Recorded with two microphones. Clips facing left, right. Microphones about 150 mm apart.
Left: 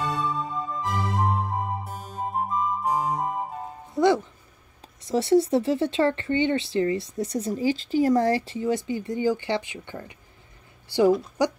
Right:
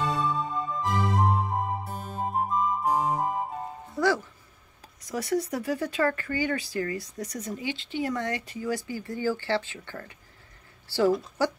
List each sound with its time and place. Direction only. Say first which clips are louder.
0.1 s music: even; centre (ahead or behind)
3.9 s a woman's voice: left 5 dB; 20° left (ahead or behind)